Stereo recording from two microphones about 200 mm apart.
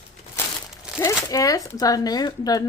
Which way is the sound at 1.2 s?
15° left (ahead or behind).